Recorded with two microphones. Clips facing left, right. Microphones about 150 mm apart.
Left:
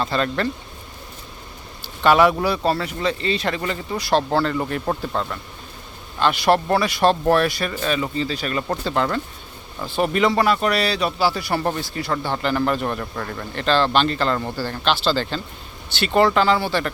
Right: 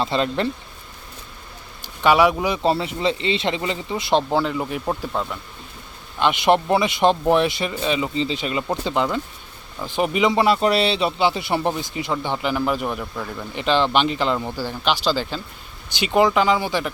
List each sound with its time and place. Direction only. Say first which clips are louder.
0.0 s speech: right 1 dB; 25° right (ahead or behind)
2.0 s speech: left 1 dB; 10° right (ahead or behind)
6.1 s speech: even; 20° right (ahead or behind)